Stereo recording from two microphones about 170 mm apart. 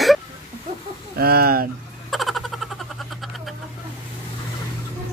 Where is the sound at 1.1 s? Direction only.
65° right (ahead or behind).